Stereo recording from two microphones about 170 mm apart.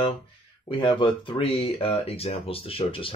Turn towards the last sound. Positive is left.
turn(degrees=30)  # may be behind; listen again after turning